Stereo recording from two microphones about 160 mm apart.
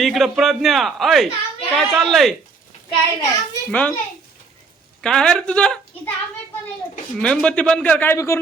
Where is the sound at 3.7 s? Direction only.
10° left (ahead or behind).